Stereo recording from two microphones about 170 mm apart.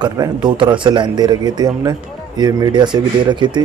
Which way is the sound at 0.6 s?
25° right (ahead or behind).